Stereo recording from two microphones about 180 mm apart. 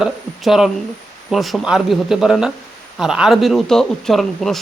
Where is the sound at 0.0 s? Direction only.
5° right (ahead or behind).